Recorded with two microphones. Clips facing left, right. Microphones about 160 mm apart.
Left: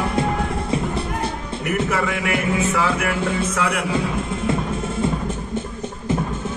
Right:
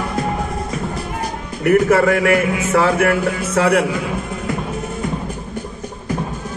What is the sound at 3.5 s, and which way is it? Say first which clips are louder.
Speech: right 8 dB; 35° right (ahead or behind).